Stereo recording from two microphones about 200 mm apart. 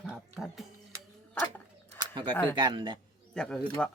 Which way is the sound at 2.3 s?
10° left (ahead or behind).